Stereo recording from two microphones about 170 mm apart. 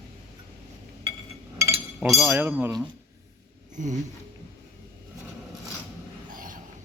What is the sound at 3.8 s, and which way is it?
Speech, 50° right (ahead or behind).